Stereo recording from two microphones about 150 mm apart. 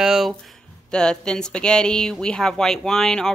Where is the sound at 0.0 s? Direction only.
5° right (ahead or behind).